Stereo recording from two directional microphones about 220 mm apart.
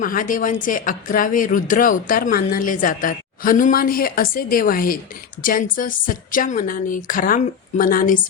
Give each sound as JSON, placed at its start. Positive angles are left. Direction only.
{"t": 0.0, "sound": "speech", "side_deg": 40}